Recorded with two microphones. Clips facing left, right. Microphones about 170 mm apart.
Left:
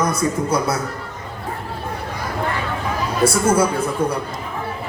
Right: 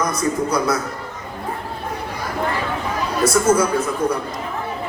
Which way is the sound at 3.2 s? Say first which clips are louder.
Even; 30° left (ahead or behind).